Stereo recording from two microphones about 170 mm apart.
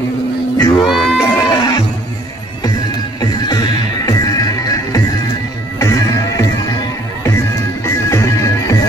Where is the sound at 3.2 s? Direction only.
25° left (ahead or behind).